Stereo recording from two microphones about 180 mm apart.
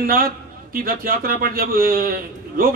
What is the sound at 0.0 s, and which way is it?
A man's voice, 55° right (ahead or behind).